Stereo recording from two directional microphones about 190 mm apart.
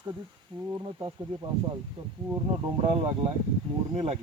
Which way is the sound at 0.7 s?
25° right (ahead or behind).